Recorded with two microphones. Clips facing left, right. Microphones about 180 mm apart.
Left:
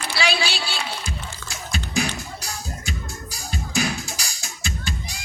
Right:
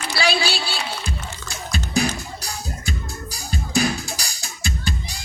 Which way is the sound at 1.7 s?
35° right (ahead or behind).